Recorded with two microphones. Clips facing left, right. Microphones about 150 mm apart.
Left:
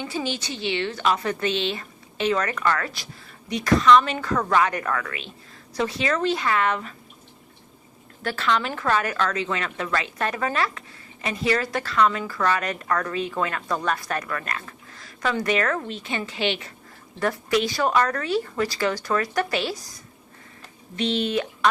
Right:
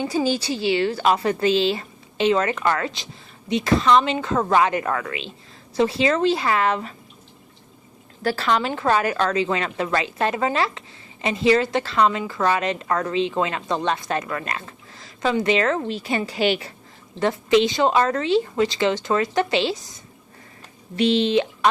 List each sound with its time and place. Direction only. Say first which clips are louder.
0.0 s a woman's voice: right 7 dB; 35° right (ahead or behind)
8.2 s a woman's voice: right 3 dB; 35° right (ahead or behind)
17.2 s a woman's voice: right 5 dB; 20° right (ahead or behind)